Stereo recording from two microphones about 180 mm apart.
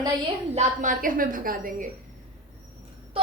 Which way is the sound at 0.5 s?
45° right (ahead or behind).